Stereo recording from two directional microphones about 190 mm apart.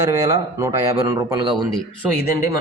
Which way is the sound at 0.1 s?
15° right (ahead or behind).